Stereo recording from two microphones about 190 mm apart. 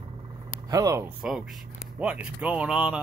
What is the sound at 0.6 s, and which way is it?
Speech, 15° right (ahead or behind).